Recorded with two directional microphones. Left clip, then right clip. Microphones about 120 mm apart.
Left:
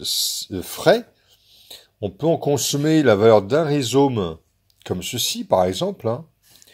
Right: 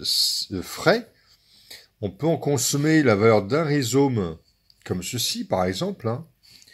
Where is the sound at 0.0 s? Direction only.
30° right (ahead or behind).